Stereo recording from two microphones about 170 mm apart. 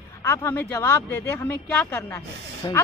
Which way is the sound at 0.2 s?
15° left (ahead or behind).